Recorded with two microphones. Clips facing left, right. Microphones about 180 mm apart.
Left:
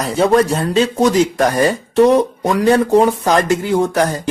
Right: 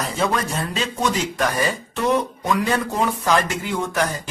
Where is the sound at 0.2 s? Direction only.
35° left (ahead or behind).